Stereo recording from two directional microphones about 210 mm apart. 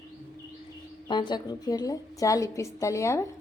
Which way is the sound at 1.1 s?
20° left (ahead or behind).